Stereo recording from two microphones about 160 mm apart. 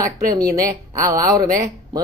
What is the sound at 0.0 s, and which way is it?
Speech, 20° right (ahead or behind).